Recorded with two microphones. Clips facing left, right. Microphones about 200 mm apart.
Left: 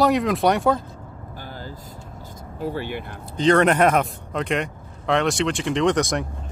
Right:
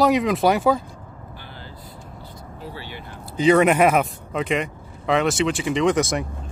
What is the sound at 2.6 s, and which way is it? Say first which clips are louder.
Speech: left 10 dB; 50° left (ahead or behind).